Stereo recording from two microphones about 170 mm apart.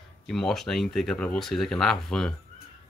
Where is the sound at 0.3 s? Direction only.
Centre (ahead or behind).